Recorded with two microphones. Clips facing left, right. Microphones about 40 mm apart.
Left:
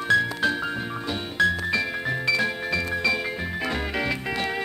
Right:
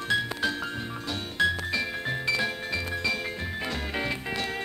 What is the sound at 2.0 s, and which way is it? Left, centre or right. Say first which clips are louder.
Music: left 3 dB; centre.